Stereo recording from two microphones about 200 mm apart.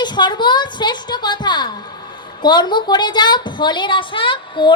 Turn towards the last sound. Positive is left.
turn(degrees=25)  # may be behind; listen again after turning